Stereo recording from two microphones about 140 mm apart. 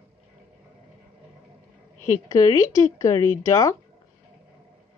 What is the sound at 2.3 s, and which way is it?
Speech, 25° left (ahead or behind).